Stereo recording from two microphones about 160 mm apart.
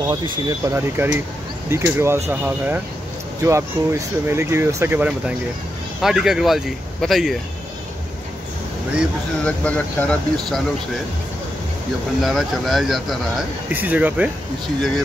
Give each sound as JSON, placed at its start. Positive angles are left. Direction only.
{"t": 0.1, "sound": "speech", "side_deg": -20}
{"t": 9.4, "sound": "speech", "side_deg": 10}
{"t": 12.2, "sound": "speech", "side_deg": 0}